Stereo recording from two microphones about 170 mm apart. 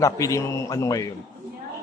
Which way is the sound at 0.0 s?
20° left (ahead or behind).